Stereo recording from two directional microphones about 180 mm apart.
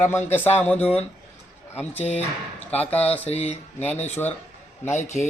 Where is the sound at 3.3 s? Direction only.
35° left (ahead or behind).